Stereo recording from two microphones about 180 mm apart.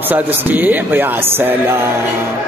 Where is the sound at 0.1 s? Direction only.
10° right (ahead or behind).